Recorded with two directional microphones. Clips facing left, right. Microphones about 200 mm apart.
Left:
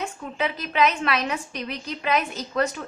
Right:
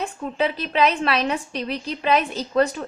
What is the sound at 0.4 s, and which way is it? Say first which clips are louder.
A woman's voice: right 2 dB; 30° right (ahead or behind).